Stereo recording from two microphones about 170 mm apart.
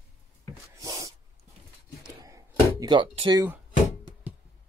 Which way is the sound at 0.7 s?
20° right (ahead or behind).